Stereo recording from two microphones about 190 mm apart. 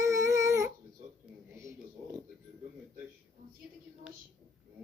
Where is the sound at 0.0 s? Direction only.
15° right (ahead or behind).